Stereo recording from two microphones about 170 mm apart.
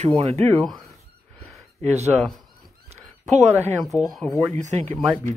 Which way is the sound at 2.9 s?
40° right (ahead or behind).